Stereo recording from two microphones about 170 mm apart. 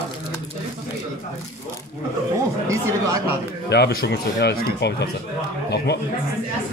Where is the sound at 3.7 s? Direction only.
75° left (ahead or behind).